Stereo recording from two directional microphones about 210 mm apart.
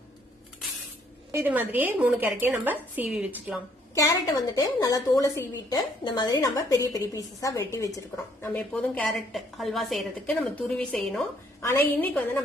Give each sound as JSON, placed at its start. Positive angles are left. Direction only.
{"t": 1.3, "sound": "a woman's voice", "side_deg": -10}
{"t": 3.9, "sound": "a woman's voice", "side_deg": 15}